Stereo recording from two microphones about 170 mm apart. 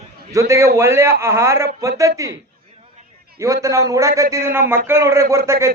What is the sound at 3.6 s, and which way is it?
A man's voice, 20° right (ahead or behind).